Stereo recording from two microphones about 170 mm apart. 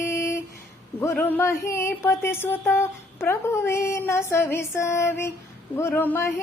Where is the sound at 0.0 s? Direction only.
15° left (ahead or behind).